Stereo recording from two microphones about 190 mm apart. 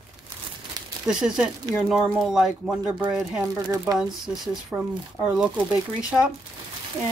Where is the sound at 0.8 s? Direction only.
20° right (ahead or behind).